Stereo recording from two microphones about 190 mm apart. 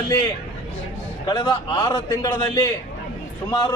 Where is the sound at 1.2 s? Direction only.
25° left (ahead or behind).